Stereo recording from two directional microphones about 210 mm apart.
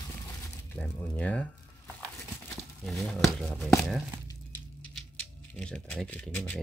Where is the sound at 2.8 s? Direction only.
Centre (ahead or behind).